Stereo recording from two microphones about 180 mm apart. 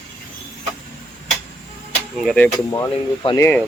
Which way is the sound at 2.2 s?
5° left (ahead or behind).